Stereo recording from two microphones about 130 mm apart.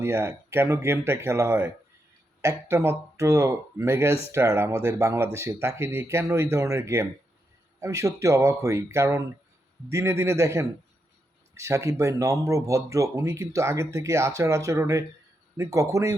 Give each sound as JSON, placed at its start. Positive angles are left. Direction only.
{"t": 0.0, "sound": "speech", "side_deg": -20}